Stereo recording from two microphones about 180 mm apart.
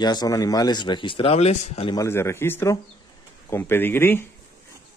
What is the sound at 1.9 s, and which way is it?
Speech, 15° left (ahead or behind).